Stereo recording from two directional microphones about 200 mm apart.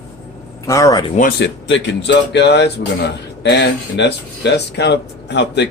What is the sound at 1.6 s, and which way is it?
Speech, 65° left (ahead or behind).